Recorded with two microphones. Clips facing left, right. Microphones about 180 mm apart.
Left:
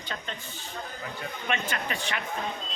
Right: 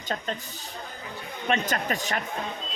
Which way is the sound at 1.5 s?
40° right (ahead or behind).